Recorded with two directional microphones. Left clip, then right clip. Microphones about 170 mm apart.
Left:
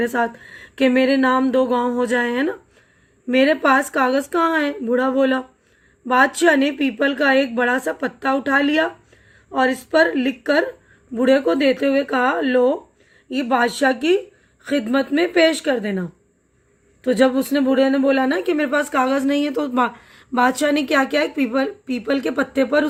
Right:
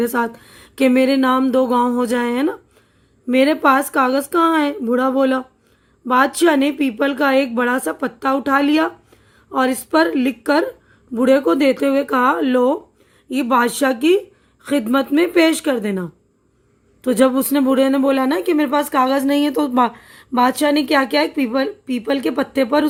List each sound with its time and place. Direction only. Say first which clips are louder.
0.0 s speech: right 1 dB; 40° right (ahead or behind)
4.1 s speech: right 2 dB; 35° right (ahead or behind)